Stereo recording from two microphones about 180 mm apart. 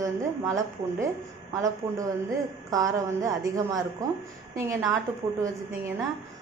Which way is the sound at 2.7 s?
20° right (ahead or behind).